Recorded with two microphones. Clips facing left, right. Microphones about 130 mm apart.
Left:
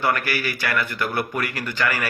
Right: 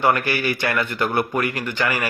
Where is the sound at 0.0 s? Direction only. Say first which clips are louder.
Right 4 dB; 20° right (ahead or behind).